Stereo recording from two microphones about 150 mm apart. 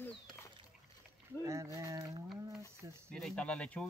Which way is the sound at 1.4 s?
20° right (ahead or behind).